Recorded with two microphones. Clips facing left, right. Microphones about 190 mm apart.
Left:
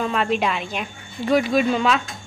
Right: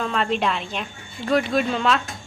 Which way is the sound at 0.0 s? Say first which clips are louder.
Left 1 dB; 5° left (ahead or behind).